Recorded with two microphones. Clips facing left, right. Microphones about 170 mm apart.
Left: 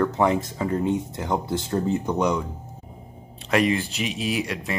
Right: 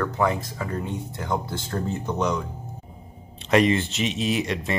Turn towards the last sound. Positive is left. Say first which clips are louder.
# right 2 dB
turn(degrees=5)  # may be behind; listen again after turning